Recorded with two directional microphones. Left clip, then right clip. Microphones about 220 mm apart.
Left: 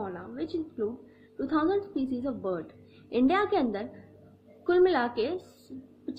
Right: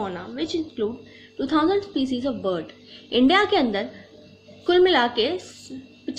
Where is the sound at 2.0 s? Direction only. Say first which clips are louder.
Right 7 dB; centre (ahead or behind).